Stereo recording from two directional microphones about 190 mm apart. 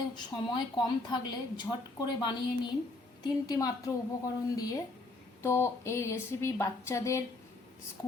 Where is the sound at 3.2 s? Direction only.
20° left (ahead or behind).